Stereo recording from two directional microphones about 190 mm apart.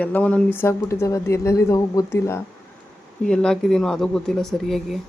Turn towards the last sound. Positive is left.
turn(degrees=0)  # may be behind; listen again after turning